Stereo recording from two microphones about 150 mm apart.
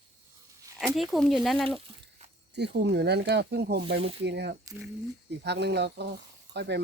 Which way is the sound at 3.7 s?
40° right (ahead or behind).